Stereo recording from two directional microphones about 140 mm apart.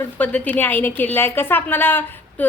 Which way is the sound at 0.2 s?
10° left (ahead or behind).